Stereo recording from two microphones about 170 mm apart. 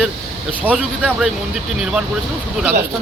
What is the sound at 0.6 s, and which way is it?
Speech, 5° right (ahead or behind).